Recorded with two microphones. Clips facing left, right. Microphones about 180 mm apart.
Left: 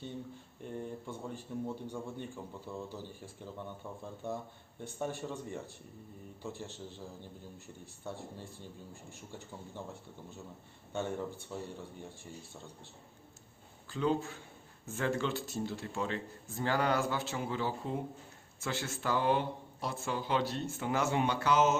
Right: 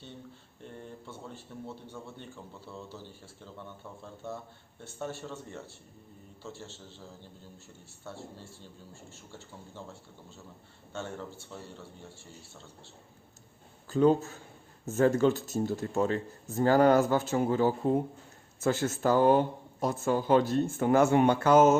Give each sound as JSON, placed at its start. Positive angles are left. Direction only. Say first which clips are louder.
{"t": 0.6, "sound": "a sound", "louder": "left 4 dB", "side_deg": 15}
{"t": 1.6, "sound": "speech", "louder": "left 1 dB", "side_deg": 15}
{"t": 4.0, "sound": "speech", "louder": "left 1 dB", "side_deg": 15}
{"t": 8.0, "sound": "speech", "louder": "left 1 dB", "side_deg": 15}
{"t": 13.8, "sound": "speech", "louder": "right 8 dB", "side_deg": -45}